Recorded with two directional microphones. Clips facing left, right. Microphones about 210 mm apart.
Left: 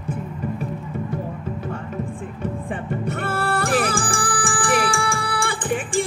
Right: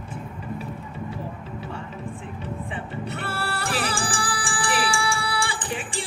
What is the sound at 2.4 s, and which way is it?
Music, 50° left (ahead or behind).